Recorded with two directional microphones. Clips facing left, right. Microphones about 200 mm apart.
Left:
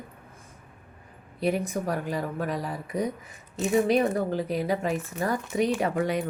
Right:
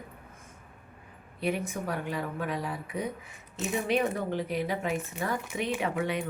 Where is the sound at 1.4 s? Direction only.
40° left (ahead or behind).